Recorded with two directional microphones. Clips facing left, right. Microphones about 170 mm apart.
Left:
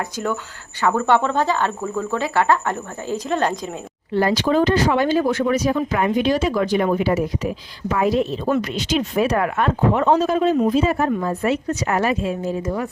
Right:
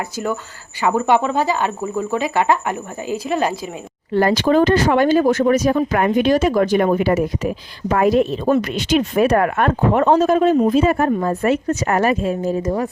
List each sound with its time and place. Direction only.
0.8 s speech: 10° right (ahead or behind)
4.1 s speech: 55° right (ahead or behind); by 12.9 s 35° right (ahead or behind)